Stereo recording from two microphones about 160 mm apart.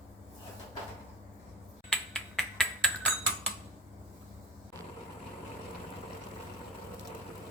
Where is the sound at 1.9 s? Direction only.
5° left (ahead or behind).